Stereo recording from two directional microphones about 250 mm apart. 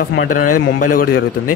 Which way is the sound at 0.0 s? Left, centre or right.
Left.